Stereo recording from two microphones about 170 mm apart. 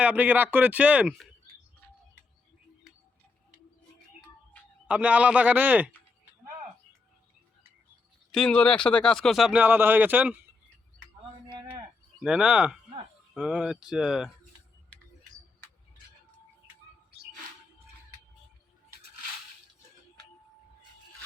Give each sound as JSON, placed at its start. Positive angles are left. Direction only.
{"t": 0.0, "sound": "speech", "side_deg": -10}
{"t": 4.9, "sound": "speech", "side_deg": -10}
{"t": 8.3, "sound": "speech", "side_deg": 5}
{"t": 11.4, "sound": "a sound", "side_deg": -30}
{"t": 12.2, "sound": "speech", "side_deg": -5}